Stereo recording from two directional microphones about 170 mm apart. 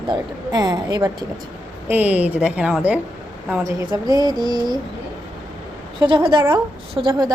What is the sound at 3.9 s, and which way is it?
Speech, 25° right (ahead or behind).